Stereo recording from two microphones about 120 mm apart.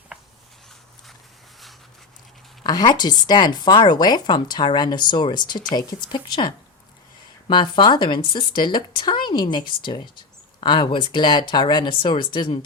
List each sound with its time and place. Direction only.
2.6 s speech: 35° left (ahead or behind)